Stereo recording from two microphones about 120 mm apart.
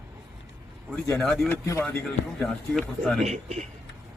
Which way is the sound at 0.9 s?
5° left (ahead or behind).